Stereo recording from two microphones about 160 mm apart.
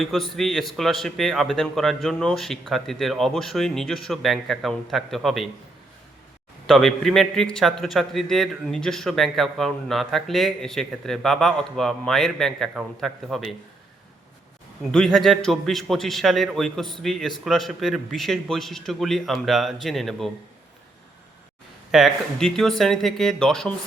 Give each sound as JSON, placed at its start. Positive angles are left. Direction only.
{"t": 0.0, "sound": "a man's voice", "side_deg": 0}
{"t": 6.7, "sound": "a man's voice", "side_deg": 0}
{"t": 14.9, "sound": "a man's voice", "side_deg": 0}
{"t": 21.9, "sound": "a man's voice", "side_deg": 0}